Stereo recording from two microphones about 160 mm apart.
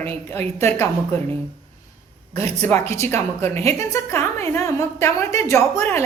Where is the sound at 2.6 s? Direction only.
15° left (ahead or behind).